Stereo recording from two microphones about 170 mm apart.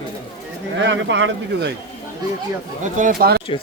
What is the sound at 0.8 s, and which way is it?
Speech, 90° right.